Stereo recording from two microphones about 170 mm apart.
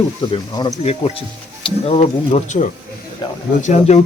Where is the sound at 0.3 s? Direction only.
25° left (ahead or behind).